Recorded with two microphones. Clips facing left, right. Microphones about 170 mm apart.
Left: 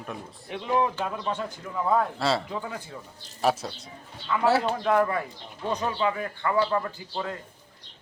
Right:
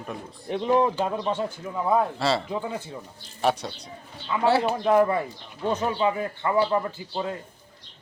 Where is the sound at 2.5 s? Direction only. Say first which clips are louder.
Right 4 dB; 20° right (ahead or behind).